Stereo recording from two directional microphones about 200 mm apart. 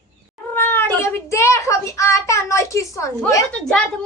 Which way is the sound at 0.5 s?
10° left (ahead or behind).